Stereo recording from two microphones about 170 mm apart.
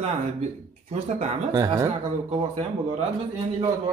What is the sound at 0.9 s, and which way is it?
Speech, 40° right (ahead or behind).